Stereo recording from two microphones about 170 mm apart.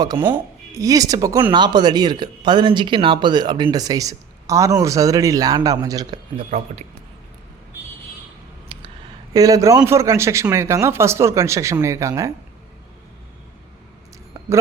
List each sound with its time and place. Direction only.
0.2 s speech: 15° right (ahead or behind)
8.7 s a sound: 35° right (ahead or behind)
9.3 s speech: 20° right (ahead or behind)